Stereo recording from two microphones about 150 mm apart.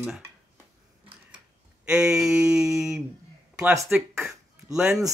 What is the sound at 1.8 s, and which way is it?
Speech, 5° right (ahead or behind).